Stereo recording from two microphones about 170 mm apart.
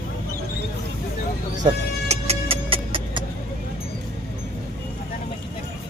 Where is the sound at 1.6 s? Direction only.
40° right (ahead or behind).